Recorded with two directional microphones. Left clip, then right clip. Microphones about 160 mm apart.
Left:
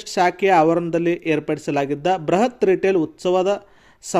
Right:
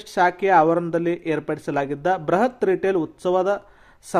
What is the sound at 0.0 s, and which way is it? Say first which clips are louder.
A man's voice: left 1 dB; 20° left (ahead or behind).